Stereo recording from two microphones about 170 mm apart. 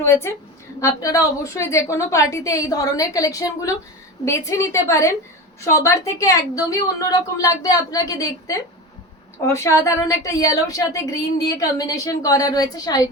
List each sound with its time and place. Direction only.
0.0 s a woman's voice: 15° left (ahead or behind)